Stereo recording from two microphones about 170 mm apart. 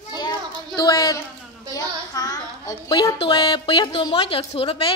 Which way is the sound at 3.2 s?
30° left (ahead or behind).